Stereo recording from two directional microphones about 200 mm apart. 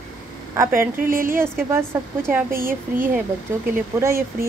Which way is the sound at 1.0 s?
45° right (ahead or behind).